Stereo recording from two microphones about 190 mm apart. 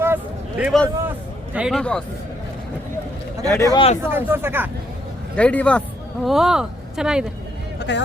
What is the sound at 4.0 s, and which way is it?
Speech, 10° right (ahead or behind).